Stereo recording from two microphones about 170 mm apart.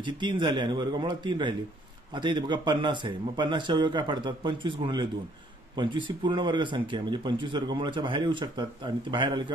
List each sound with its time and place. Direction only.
0.0 s speech: 25° right (ahead or behind)